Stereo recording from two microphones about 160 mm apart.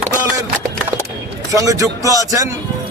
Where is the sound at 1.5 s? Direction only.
20° right (ahead or behind).